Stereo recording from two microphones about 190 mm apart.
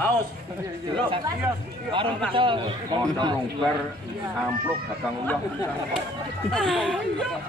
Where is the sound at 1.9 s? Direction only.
25° right (ahead or behind).